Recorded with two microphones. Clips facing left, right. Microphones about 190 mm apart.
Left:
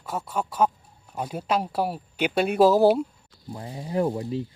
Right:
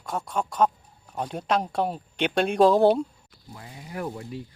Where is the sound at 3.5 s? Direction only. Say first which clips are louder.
Left 9 dB; 30° left (ahead or behind).